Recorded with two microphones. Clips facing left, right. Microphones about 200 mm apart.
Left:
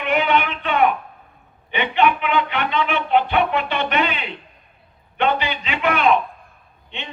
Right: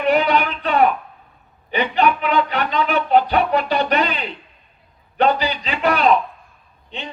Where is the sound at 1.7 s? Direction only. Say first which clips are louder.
Right 1 dB; 35° right (ahead or behind).